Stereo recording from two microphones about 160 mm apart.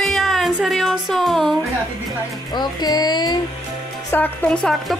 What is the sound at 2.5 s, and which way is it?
Child singing, 25° left (ahead or behind).